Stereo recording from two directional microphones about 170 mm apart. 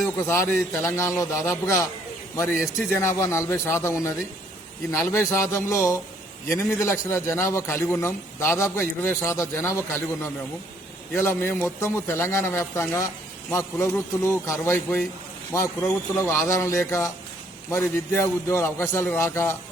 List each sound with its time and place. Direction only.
0.0 s a man's voice: 15° left (ahead or behind)